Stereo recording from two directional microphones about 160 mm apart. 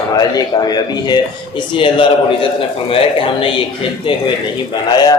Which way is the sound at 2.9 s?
35° left (ahead or behind).